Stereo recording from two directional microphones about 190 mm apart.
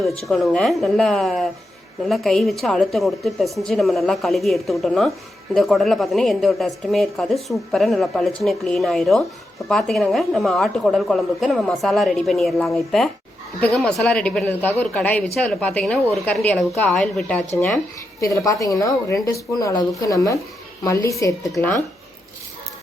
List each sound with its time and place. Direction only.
0.3 s a woman's voice: centre (ahead or behind)
18.2 s a woman's voice: 15° left (ahead or behind)